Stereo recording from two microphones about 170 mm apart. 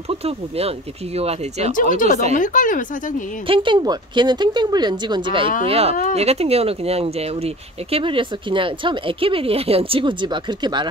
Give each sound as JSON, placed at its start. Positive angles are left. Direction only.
{"t": 0.1, "sound": "speech", "side_deg": -35}
{"t": 2.0, "sound": "speech", "side_deg": 50}
{"t": 3.4, "sound": "speech", "side_deg": -30}